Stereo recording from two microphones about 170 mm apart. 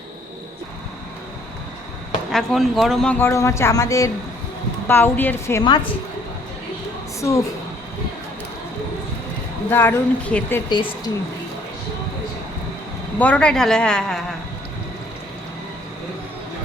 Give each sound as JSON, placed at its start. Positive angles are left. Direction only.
{"t": 2.3, "sound": "speech", "side_deg": 0}
{"t": 7.2, "sound": "speech", "side_deg": 20}
{"t": 9.6, "sound": "speech", "side_deg": 10}
{"t": 10.7, "sound": "speech", "side_deg": 25}
{"t": 13.1, "sound": "speech", "side_deg": 10}